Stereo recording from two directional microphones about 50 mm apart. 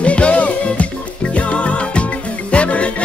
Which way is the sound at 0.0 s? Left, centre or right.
Left.